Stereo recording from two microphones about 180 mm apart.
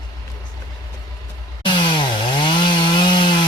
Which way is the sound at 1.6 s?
25° left (ahead or behind).